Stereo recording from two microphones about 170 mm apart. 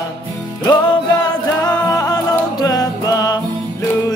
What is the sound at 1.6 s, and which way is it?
Music, 20° left (ahead or behind).